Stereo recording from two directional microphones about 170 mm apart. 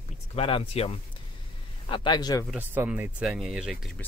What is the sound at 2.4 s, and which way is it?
Speech, 10° right (ahead or behind).